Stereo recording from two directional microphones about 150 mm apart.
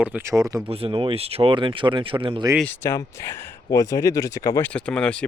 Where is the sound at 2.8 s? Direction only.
20° left (ahead or behind).